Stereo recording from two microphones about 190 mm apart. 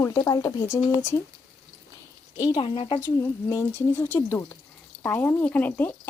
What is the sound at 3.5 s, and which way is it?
Speech, 15° left (ahead or behind).